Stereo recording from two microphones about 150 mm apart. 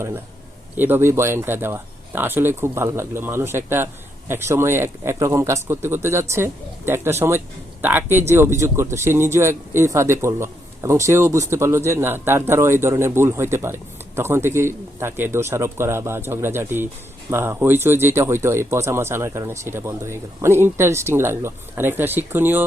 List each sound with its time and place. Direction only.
0.8 s speech: 15° right (ahead or behind)